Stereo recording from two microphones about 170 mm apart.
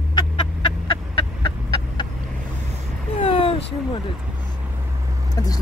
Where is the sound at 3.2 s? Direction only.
30° left (ahead or behind).